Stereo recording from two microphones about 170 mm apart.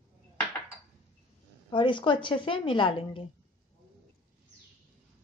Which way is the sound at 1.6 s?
30° left (ahead or behind).